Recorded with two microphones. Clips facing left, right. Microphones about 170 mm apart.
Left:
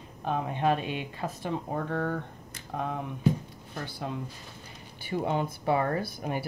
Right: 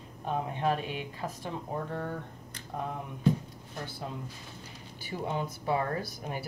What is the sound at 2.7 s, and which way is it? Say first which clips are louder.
Speech: left 3 dB; 90° left.